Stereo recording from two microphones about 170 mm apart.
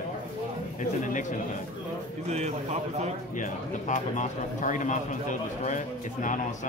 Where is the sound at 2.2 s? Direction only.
40° right (ahead or behind).